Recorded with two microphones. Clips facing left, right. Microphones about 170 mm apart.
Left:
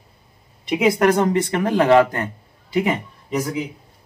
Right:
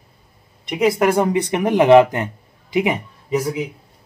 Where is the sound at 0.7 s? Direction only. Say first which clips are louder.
Even; centre (ahead or behind).